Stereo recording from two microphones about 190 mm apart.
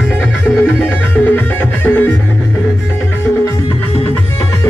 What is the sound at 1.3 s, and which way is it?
Music, 10° left (ahead or behind).